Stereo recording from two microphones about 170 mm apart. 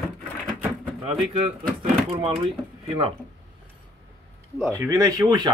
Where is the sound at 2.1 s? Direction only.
30° right (ahead or behind).